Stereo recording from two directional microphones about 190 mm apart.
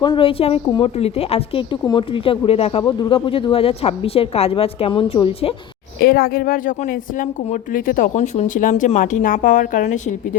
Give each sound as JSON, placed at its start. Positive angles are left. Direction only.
{"t": 0.0, "sound": "a woman's voice", "side_deg": 25}
{"t": 6.0, "sound": "a woman's voice", "side_deg": 55}